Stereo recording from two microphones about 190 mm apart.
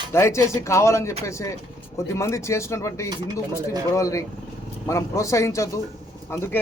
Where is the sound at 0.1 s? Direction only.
15° left (ahead or behind).